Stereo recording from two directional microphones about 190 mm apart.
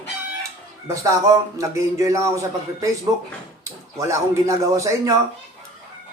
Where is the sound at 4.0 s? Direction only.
15° right (ahead or behind).